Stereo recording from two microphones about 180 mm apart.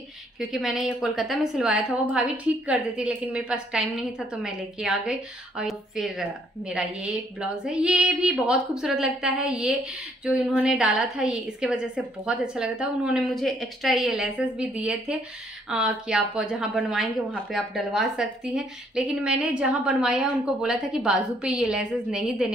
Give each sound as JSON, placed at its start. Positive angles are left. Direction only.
{"t": 0.4, "sound": "a woman's voice", "side_deg": 0}